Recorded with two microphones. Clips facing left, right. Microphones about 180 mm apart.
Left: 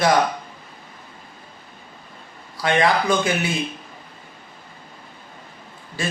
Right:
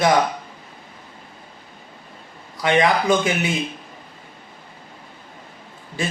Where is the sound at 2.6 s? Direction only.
20° right (ahead or behind).